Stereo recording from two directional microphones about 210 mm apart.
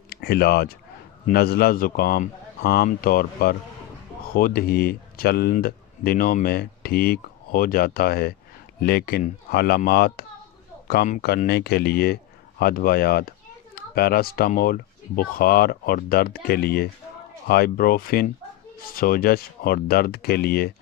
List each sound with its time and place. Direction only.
0.1 s speech: 50° left (ahead or behind)